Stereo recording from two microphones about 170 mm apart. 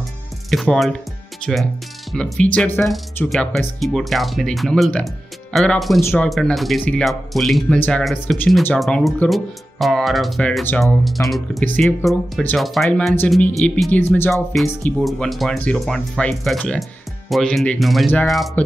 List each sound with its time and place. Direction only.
0.5 s speech: centre (ahead or behind)
5.9 s speech: 15° left (ahead or behind)
6.2 s speech: centre (ahead or behind)
14.3 s speech: centre (ahead or behind)